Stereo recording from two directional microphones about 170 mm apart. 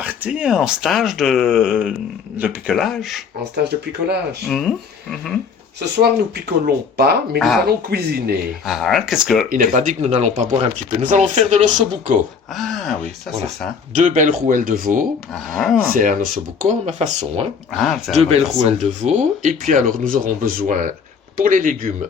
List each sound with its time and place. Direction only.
0.0 s speech: 10° right (ahead or behind)
4.4 s speech: centre (ahead or behind)
6.0 s speech: 70° right (ahead or behind)
7.3 s speech: centre (ahead or behind)
7.9 s speech: 70° right (ahead or behind)
8.6 s speech: centre (ahead or behind)
9.5 s speech: 50° right (ahead or behind)
12.5 s speech: centre (ahead or behind)
13.9 s speech: 45° right (ahead or behind)
15.5 s speech: centre (ahead or behind)
15.9 s speech: 50° right (ahead or behind)
17.7 s speech: centre (ahead or behind)
18.2 s speech: 40° right (ahead or behind)